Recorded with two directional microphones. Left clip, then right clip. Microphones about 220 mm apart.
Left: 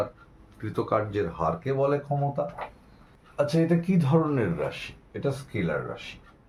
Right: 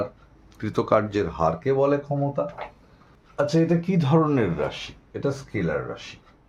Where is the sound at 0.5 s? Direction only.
50° right (ahead or behind); by 2.0 s 30° right (ahead or behind).